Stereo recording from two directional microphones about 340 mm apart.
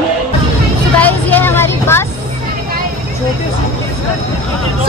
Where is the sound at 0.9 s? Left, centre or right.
Centre.